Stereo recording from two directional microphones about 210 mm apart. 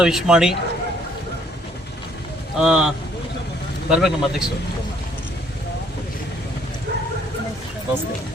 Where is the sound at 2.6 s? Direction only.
5° right (ahead or behind).